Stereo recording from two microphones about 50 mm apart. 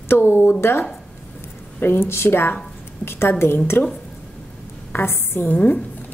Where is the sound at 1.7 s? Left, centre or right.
Left.